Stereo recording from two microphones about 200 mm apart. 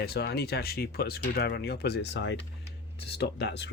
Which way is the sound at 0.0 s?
55° left (ahead or behind).